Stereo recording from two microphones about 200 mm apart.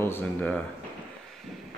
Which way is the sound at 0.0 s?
10° left (ahead or behind).